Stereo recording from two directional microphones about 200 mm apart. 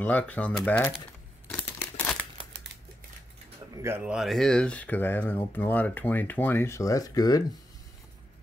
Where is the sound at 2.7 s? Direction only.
70° right (ahead or behind).